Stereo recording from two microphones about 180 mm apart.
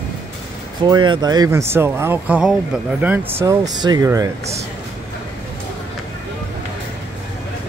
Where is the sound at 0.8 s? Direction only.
25° right (ahead or behind).